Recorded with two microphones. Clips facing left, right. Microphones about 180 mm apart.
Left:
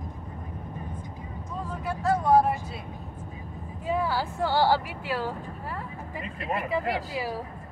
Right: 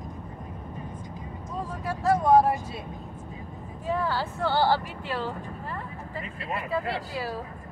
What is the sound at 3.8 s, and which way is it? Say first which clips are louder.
Speech: left 1 dB; 10° left (ahead or behind).